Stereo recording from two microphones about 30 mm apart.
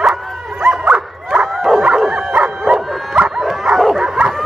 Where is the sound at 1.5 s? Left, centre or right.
Centre.